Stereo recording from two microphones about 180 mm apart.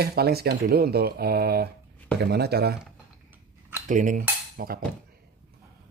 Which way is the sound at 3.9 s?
45° right (ahead or behind).